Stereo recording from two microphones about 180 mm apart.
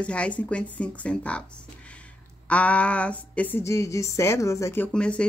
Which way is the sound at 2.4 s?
5° left (ahead or behind).